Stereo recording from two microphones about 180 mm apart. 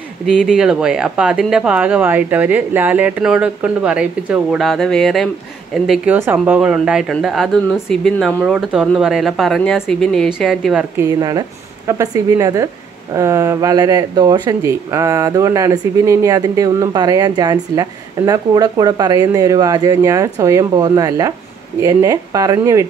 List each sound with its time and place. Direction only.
0.3 s speech: centre (ahead or behind)
5.9 s speech: 10° right (ahead or behind)
11.1 s speech: 20° right (ahead or behind)